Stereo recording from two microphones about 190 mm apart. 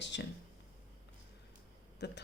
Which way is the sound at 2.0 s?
65° left (ahead or behind).